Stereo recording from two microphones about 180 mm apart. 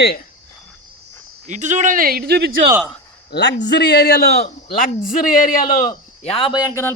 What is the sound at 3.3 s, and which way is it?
A man's voice, 70° left (ahead or behind).